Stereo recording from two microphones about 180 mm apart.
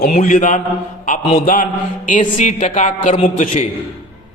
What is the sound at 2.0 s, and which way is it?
A man's voice, 45° left (ahead or behind).